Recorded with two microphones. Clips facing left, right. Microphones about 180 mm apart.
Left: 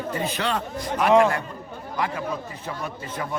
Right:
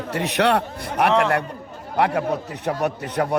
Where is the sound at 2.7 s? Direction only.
70° right (ahead or behind).